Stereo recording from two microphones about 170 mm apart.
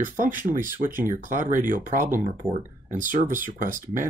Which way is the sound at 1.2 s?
50° right (ahead or behind).